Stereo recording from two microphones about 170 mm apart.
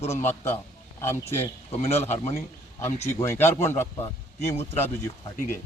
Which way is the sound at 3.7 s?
15° left (ahead or behind).